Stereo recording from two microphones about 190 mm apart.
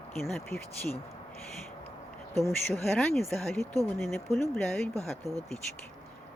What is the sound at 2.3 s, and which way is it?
Speech, 15° left (ahead or behind).